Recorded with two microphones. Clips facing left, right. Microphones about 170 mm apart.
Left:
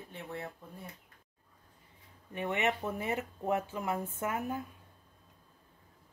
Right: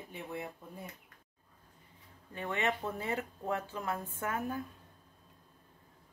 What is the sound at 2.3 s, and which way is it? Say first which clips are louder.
Speech: left 2 dB; 20° left (ahead or behind).